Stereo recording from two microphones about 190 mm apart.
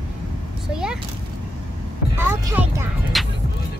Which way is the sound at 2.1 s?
10° right (ahead or behind).